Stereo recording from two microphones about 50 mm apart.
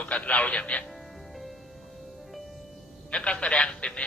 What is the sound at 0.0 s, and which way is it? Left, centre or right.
Speech, left.